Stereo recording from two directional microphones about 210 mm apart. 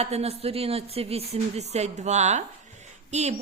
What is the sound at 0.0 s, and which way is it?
Speech, 30° right (ahead or behind).